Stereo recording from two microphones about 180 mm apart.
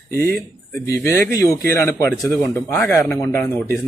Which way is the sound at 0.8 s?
15° left (ahead or behind).